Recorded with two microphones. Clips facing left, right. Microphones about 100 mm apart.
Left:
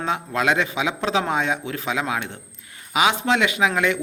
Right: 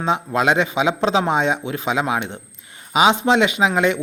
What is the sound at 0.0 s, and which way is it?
A man's voice, 20° right (ahead or behind).